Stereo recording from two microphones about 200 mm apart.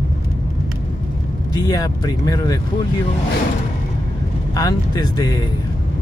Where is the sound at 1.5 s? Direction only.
20° left (ahead or behind).